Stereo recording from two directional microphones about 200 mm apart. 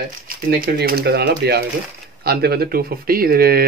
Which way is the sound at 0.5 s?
50° right (ahead or behind).